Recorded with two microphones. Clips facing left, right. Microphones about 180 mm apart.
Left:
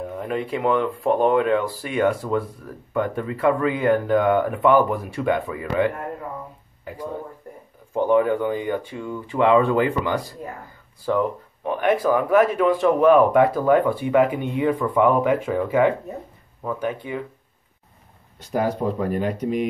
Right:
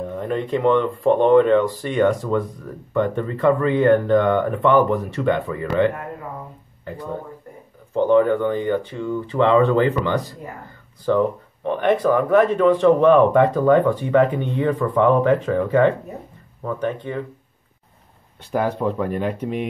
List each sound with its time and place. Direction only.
0.0 s speech: 5° left (ahead or behind)
6.8 s a sound: 10° left (ahead or behind)
7.9 s speech: 10° left (ahead or behind)
18.5 s speech: 35° left (ahead or behind)